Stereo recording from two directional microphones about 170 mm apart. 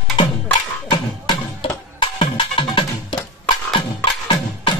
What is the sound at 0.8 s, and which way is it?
Clip-clop, 25° left (ahead or behind).